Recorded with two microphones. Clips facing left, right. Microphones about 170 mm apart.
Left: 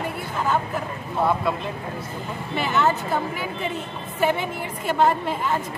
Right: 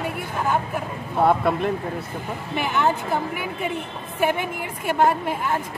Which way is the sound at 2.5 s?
10° right (ahead or behind).